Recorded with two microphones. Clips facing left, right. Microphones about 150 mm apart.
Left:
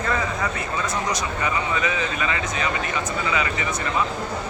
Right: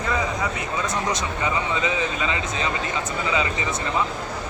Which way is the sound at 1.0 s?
20° right (ahead or behind).